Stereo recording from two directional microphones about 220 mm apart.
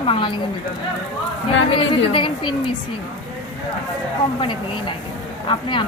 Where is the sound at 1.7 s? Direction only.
25° left (ahead or behind).